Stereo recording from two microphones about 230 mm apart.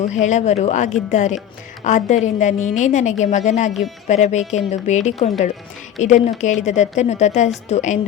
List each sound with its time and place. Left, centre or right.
0.1 s a woman's voice: left